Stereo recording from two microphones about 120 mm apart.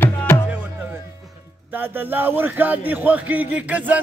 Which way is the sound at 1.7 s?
15° right (ahead or behind).